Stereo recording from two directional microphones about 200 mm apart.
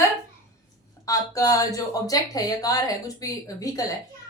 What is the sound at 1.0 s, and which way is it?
Speech, 15° left (ahead or behind).